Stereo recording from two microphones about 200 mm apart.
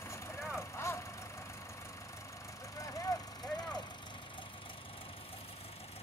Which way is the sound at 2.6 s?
15° left (ahead or behind).